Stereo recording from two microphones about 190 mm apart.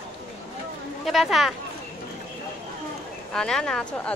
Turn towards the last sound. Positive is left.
turn(degrees=5)  # may be behind; listen again after turning